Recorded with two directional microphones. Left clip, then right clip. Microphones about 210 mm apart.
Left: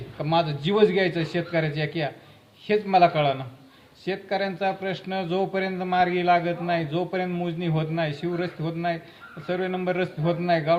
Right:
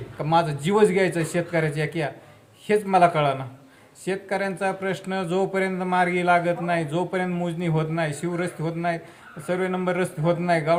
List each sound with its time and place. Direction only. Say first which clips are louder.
0.2 s a man's voice: right 2 dB; 20° right (ahead or behind)